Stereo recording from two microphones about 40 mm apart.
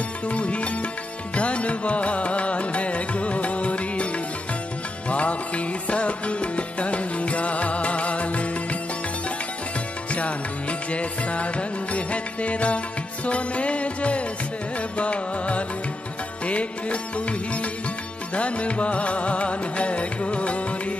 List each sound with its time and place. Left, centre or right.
0.3 s music: left
10.1 s music: left